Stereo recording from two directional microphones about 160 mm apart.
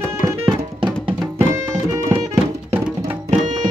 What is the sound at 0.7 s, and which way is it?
Music, 30° right (ahead or behind).